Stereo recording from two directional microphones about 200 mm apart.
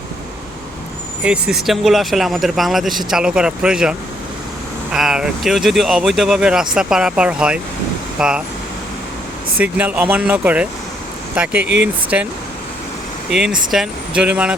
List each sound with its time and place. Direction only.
1.2 s speech: 5° right (ahead or behind)
9.6 s speech: 5° right (ahead or behind)
11.6 s speech: 60° right (ahead or behind)
13.7 s speech: 5° right (ahead or behind)